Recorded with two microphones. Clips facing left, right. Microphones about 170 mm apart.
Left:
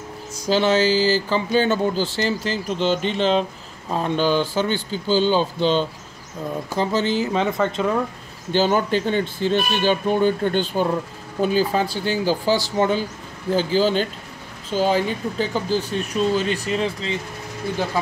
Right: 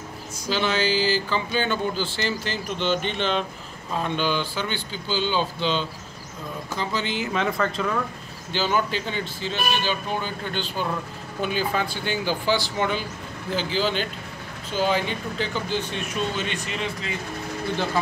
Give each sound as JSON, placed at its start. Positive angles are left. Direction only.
{"t": 0.5, "sound": "speech", "side_deg": 40}
{"t": 7.4, "sound": "speech", "side_deg": 25}
{"t": 8.5, "sound": "speech", "side_deg": 45}
{"t": 11.4, "sound": "speech", "side_deg": 35}